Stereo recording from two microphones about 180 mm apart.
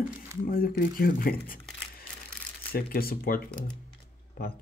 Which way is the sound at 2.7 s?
55° left (ahead or behind).